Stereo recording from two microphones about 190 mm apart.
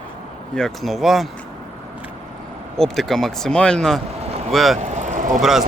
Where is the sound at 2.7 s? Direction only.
Centre (ahead or behind).